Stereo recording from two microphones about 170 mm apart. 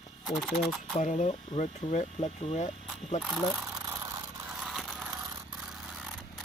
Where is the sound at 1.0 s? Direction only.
45° left (ahead or behind).